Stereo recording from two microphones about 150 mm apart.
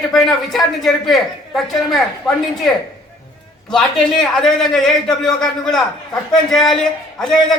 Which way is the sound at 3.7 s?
5° left (ahead or behind).